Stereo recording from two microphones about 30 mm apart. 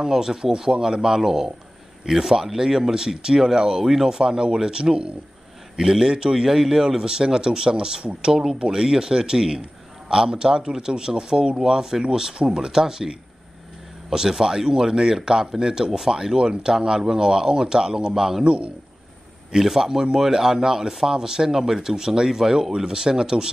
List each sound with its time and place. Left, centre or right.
0.0 s speech: centre
4.2 s speech: right
5.8 s speech: centre
7.1 s speech: right
8.0 s speech: right
8.3 s speech: right
14.1 s speech: centre
18.4 s speech: right
19.5 s speech: centre